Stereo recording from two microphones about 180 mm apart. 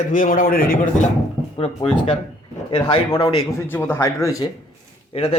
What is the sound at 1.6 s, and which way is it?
Speech, 35° left (ahead or behind).